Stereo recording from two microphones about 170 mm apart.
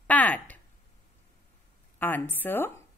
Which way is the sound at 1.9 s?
10° left (ahead or behind).